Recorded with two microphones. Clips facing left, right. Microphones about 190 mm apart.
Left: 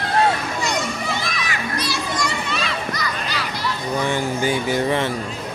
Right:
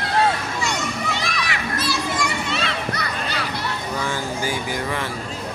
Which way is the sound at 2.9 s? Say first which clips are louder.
Even; 60° right (ahead or behind).